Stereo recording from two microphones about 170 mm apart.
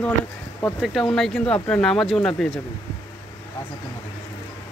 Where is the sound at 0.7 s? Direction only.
Centre (ahead or behind).